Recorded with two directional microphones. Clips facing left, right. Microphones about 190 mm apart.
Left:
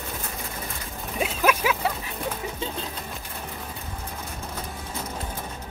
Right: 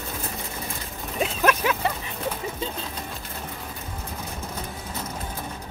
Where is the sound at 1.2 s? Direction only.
5° left (ahead or behind).